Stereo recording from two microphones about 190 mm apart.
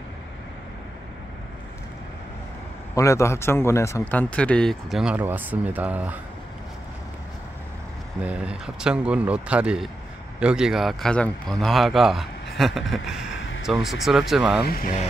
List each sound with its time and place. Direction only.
2.9 s a man's voice: 15° left (ahead or behind); by 6.1 s 10° right (ahead or behind)
8.2 s speech: 5° right (ahead or behind)
14.6 s speech: 50° left (ahead or behind)